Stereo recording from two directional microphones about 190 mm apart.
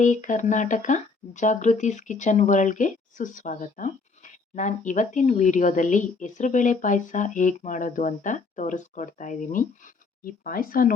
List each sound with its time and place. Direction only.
0.0 s speech: 40° left (ahead or behind)